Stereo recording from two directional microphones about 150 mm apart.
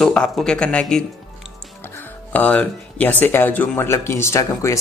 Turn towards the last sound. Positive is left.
turn(degrees=20)  # may be behind; listen again after turning